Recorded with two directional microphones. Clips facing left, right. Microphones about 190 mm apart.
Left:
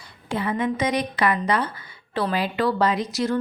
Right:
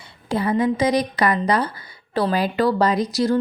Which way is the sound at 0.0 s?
35° right (ahead or behind).